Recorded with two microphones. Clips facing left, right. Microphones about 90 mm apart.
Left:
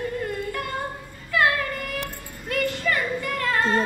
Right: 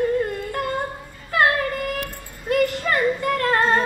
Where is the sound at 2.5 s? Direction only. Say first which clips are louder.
Right 5 dB; 30° right (ahead or behind).